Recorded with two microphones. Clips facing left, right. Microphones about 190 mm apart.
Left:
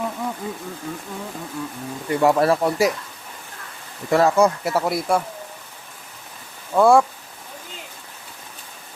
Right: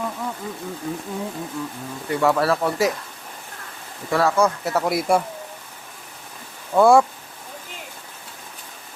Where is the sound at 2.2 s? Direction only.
15° left (ahead or behind).